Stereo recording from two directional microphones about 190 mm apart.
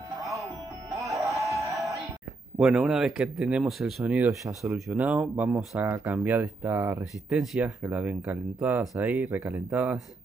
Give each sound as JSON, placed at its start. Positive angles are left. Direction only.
{"t": 1.5, "sound": "music", "side_deg": 0}
{"t": 2.5, "sound": "speech", "side_deg": -5}
{"t": 4.3, "sound": "speech", "side_deg": -15}
{"t": 7.2, "sound": "speech", "side_deg": -5}